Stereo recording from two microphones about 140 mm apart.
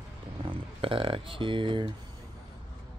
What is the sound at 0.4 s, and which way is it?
Speech, 40° right (ahead or behind).